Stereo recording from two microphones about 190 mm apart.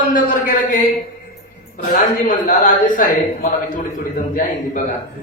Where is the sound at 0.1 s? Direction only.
45° left (ahead or behind).